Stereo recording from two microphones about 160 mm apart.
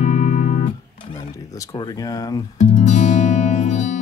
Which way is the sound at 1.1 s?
20° left (ahead or behind).